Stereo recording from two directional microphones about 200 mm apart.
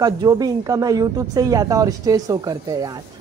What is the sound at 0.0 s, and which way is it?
A man's voice, 20° right (ahead or behind).